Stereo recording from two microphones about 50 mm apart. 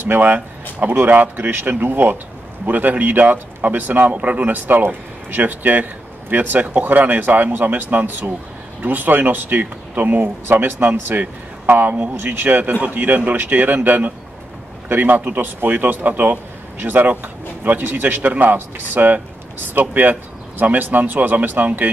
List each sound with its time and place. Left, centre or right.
0.0 s speech: right